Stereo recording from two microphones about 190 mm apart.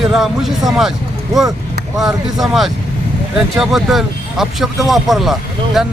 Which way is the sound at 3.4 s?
Centre (ahead or behind).